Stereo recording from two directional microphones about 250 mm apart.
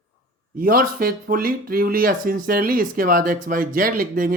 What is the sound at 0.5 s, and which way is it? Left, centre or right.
Speech, right.